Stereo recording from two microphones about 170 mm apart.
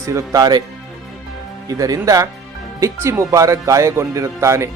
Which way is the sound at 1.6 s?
20° right (ahead or behind).